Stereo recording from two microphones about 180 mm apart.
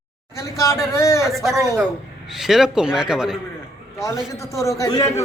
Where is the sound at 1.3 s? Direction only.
Centre (ahead or behind).